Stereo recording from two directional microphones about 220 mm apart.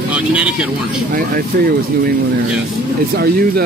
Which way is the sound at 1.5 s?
45° right (ahead or behind).